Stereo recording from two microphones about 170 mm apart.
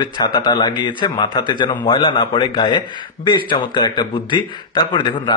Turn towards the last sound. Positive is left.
turn(degrees=30)  # may be behind; listen again after turning